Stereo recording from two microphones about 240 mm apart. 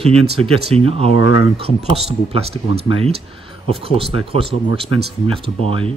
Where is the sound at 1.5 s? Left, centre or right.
Right.